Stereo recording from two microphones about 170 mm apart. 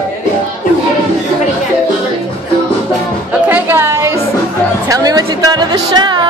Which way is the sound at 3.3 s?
10° right (ahead or behind).